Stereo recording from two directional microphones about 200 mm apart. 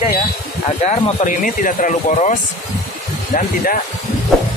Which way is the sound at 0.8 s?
35° left (ahead or behind).